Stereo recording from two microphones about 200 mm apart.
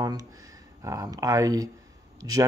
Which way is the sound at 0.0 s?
20° right (ahead or behind).